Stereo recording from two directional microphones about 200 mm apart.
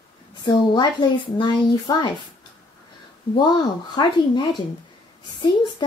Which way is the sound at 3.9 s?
20° left (ahead or behind).